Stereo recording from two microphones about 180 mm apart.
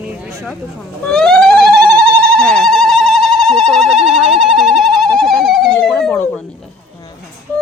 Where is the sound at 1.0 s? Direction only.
5° left (ahead or behind).